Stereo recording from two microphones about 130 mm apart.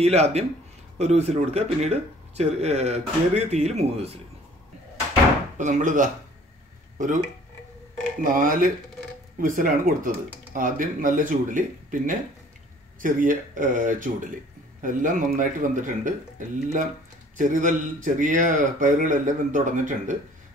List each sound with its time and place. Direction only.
0.0 s speech: 55° right (ahead or behind)
5.6 s a man's voice: 75° right (ahead or behind)
7.0 s a man's voice: 90° right; by 20.2 s 70° right (ahead or behind)